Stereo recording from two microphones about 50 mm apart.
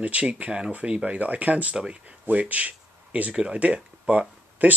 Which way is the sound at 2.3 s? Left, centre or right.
Right.